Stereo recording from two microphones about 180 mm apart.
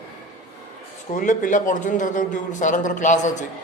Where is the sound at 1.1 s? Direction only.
45° left (ahead or behind).